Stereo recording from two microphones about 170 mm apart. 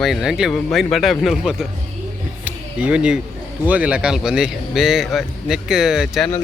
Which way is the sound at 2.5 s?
5° right (ahead or behind).